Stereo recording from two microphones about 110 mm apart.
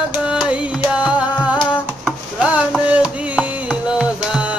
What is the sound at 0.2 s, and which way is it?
Music, 10° right (ahead or behind).